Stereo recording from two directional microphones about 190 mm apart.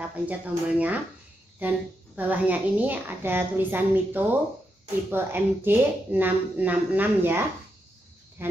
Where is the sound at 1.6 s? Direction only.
10° right (ahead or behind).